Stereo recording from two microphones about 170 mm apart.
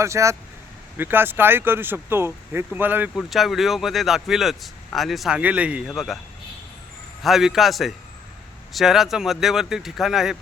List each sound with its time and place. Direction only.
0.0 s speech: 15° right (ahead or behind)
3.2 s speech: centre (ahead or behind)
7.2 s speech: centre (ahead or behind)